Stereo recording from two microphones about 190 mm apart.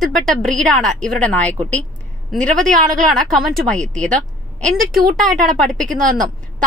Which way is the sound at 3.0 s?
Centre (ahead or behind).